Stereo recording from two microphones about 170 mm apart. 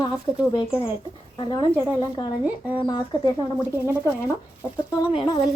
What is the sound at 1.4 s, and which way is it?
Speech, 25° left (ahead or behind).